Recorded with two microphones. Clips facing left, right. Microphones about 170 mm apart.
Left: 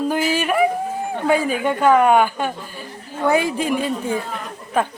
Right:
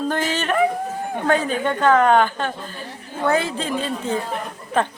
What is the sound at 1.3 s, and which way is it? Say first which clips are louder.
A woman's voice: left 2 dB; 10° left (ahead or behind).